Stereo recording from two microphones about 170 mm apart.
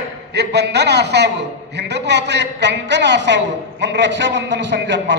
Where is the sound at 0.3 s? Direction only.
80° right.